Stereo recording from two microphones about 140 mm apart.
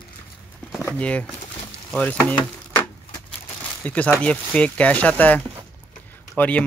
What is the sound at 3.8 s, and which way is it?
Speech, 10° left (ahead or behind).